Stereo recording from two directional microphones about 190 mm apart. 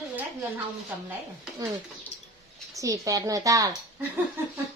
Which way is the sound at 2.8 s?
15° right (ahead or behind).